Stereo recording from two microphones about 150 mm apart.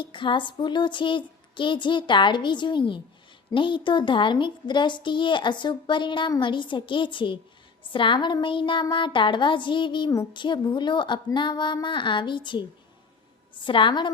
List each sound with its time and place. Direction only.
0.0 s speech: 35° left (ahead or behind)